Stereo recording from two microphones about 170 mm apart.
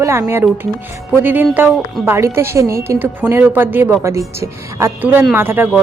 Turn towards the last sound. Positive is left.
turn(degrees=-15)  # may be behind; listen again after turning